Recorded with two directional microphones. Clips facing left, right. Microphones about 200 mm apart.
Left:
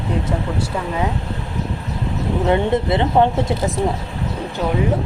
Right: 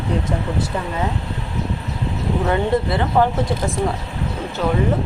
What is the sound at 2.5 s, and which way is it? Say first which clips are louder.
Speech: left 3 dB; 20° left (ahead or behind).